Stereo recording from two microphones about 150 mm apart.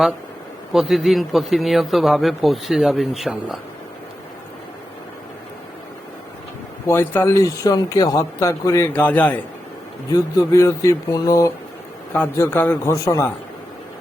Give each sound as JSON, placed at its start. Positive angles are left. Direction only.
{"t": 0.7, "sound": "a man's voice", "side_deg": 0}
{"t": 6.8, "sound": "speech", "side_deg": 15}
{"t": 10.1, "sound": "a man's voice", "side_deg": 20}